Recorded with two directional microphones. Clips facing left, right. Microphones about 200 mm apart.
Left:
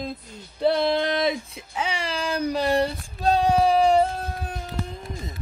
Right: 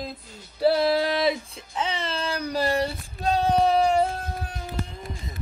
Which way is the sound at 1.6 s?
10° left (ahead or behind).